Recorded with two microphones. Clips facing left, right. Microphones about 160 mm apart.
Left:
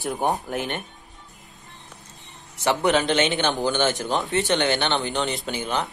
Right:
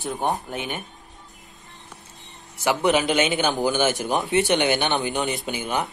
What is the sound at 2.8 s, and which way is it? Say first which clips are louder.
Speech: right 1 dB; 20° right (ahead or behind).